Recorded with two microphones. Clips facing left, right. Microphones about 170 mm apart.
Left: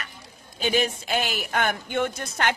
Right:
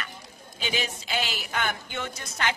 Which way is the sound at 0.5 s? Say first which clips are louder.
Left 7 dB; 50° left (ahead or behind).